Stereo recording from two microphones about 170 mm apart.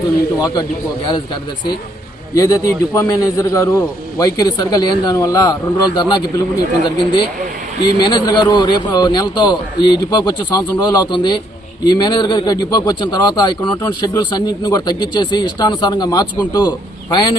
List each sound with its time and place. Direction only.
2.3 s a man's voice: 20° left (ahead or behind)